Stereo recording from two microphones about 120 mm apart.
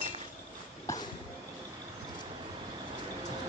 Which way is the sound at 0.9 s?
25° left (ahead or behind).